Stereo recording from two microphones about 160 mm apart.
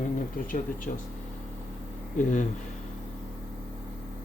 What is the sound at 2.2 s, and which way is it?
Speech, 50° left (ahead or behind).